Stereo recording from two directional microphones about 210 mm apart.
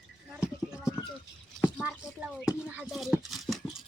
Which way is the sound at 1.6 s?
5° right (ahead or behind).